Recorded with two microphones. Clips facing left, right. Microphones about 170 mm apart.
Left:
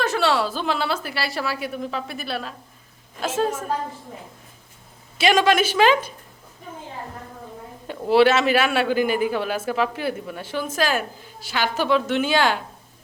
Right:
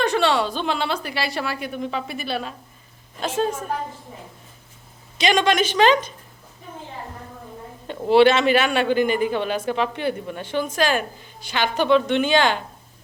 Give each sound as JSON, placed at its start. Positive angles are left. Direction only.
{"t": 0.0, "sound": "a man's voice", "side_deg": 0}
{"t": 5.1, "sound": "a woman's voice", "side_deg": 5}
{"t": 7.9, "sound": "a man's voice", "side_deg": 0}